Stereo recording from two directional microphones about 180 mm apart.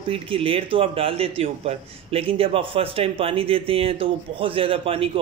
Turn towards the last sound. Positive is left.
turn(degrees=-30)  # may be behind; listen again after turning